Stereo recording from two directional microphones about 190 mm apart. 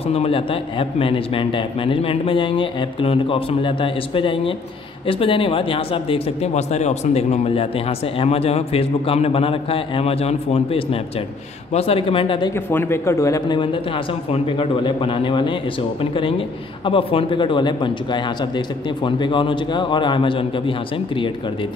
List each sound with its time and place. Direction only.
0.1 s a man's voice: 30° left (ahead or behind)
12.5 s a man's voice: 10° left (ahead or behind)